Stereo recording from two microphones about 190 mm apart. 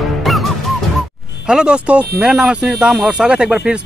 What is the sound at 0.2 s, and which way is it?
Music, centre (ahead or behind).